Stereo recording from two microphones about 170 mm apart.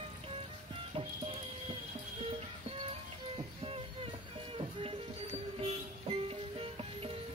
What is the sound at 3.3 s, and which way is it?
Music, 35° right (ahead or behind).